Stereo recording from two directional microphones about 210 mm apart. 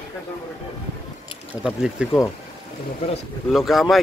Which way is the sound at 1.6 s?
5° right (ahead or behind).